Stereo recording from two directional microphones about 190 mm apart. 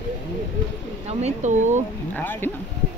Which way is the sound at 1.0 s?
35° right (ahead or behind).